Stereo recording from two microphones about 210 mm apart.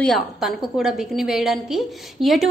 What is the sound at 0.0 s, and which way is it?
A woman's voice, centre (ahead or behind).